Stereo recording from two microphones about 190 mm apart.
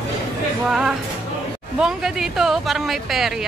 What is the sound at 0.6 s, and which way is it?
Speech, centre (ahead or behind).